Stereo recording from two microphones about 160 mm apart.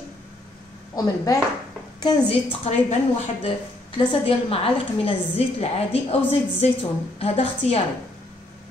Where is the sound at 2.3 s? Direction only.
35° left (ahead or behind).